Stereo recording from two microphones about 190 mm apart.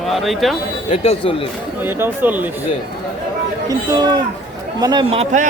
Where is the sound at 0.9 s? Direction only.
30° left (ahead or behind).